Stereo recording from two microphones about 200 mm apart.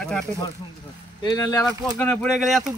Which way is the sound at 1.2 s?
15° left (ahead or behind).